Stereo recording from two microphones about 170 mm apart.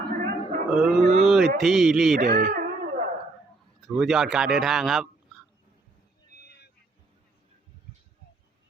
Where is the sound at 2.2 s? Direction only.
70° right (ahead or behind).